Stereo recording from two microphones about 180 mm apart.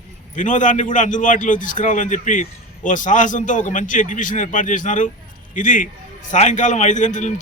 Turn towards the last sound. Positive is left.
turn(degrees=45)  # may be behind; listen again after turning